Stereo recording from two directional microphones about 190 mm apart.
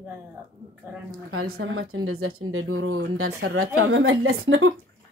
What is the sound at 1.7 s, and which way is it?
A woman's voice, 90° right.